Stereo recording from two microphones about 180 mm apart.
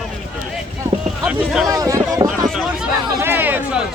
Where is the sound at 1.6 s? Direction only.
20° right (ahead or behind).